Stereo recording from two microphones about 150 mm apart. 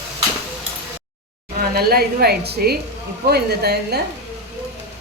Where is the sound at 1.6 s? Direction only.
90° right.